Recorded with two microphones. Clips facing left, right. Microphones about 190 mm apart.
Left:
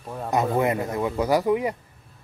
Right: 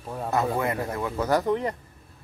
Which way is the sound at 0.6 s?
20° left (ahead or behind).